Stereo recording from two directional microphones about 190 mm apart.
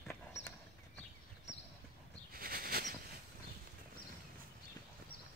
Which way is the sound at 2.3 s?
50° right (ahead or behind).